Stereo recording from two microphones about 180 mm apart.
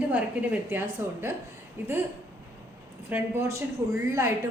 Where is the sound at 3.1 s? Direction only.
15° right (ahead or behind).